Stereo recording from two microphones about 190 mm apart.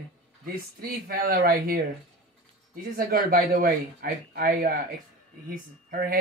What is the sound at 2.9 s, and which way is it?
Speech, 50° right (ahead or behind).